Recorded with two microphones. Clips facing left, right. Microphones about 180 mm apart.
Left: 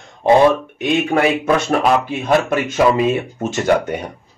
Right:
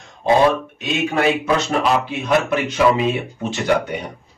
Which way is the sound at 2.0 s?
50° left (ahead or behind).